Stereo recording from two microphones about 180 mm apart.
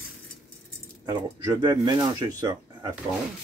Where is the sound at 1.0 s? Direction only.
20° right (ahead or behind).